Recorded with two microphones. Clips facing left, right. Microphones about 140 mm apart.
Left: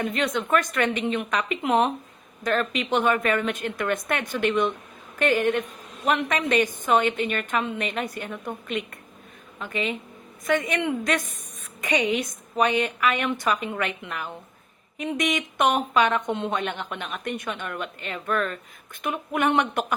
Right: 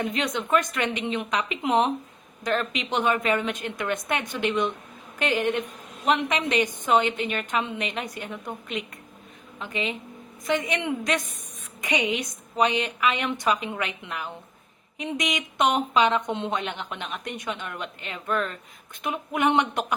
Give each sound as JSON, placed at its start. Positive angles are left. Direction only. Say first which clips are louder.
{"t": 0.2, "sound": "a woman's voice", "louder": "left 1 dB", "side_deg": -15}